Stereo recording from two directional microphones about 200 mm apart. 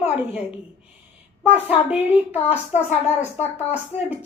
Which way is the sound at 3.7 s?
5° right (ahead or behind).